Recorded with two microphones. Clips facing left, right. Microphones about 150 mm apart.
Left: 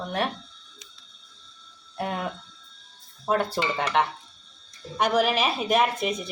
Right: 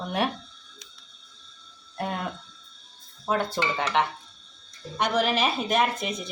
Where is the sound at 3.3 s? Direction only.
10° left (ahead or behind).